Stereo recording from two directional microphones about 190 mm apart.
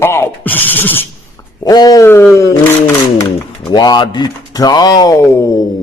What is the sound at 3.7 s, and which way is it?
Speech, 25° left (ahead or behind).